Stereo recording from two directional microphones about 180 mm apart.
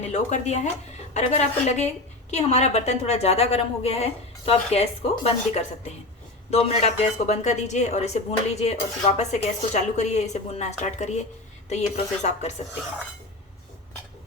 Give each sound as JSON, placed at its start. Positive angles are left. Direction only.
{"t": 0.0, "sound": "a woman's voice", "side_deg": 40}